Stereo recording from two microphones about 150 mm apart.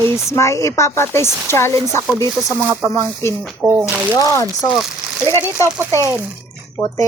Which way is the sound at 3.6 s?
15° right (ahead or behind).